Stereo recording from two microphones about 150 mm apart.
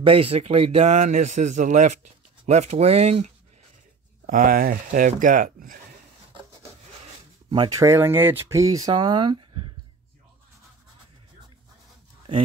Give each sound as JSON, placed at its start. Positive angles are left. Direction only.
{"t": 0.0, "sound": "speech", "side_deg": -40}
{"t": 4.3, "sound": "speech", "side_deg": -70}
{"t": 7.5, "sound": "speech", "side_deg": -25}